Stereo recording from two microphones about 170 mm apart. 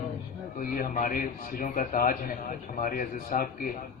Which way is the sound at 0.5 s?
55° left (ahead or behind).